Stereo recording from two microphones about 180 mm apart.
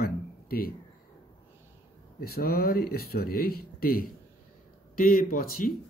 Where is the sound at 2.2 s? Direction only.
60° left (ahead or behind).